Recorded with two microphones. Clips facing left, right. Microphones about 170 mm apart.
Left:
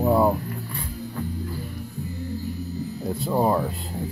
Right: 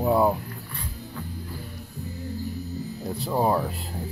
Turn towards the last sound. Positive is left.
turn(degrees=0)  # may be behind; listen again after turning